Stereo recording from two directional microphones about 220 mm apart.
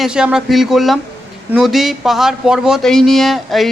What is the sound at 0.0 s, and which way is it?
Speech, 5° right (ahead or behind).